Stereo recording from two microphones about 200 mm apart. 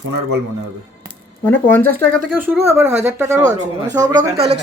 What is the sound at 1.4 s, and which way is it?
Speech, 10° left (ahead or behind).